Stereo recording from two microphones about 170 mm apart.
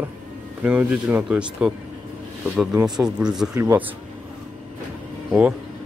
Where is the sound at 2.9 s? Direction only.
5° right (ahead or behind).